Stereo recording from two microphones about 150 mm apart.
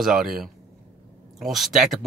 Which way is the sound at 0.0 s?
Centre (ahead or behind).